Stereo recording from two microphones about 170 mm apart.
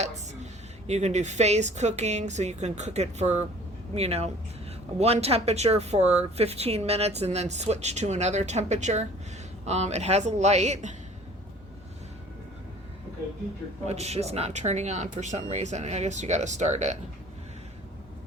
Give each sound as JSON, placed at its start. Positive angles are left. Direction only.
{"t": 0.9, "sound": "speech", "side_deg": -40}
{"t": 13.8, "sound": "speech", "side_deg": -40}